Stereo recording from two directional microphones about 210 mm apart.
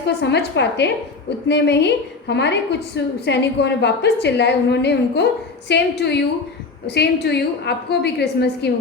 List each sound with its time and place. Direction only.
0.2 s a woman's voice: 55° left (ahead or behind)